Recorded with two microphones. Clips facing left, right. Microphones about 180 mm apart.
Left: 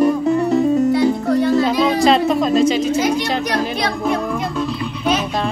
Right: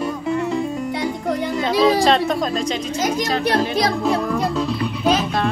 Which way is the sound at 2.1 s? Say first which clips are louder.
Left 3 dB; centre (ahead or behind).